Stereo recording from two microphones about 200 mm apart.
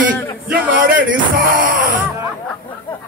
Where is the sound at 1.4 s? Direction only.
45° right (ahead or behind).